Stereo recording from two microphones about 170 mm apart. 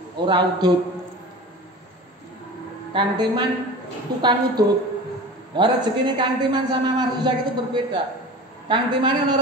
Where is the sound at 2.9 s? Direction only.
25° right (ahead or behind).